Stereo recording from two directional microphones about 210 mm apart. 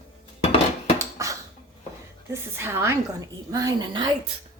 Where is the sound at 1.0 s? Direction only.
15° right (ahead or behind).